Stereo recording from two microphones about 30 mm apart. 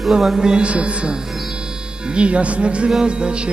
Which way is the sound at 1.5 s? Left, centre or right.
Right.